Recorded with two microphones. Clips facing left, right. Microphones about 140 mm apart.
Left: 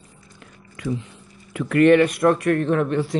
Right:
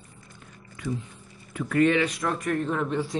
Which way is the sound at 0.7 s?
90° left.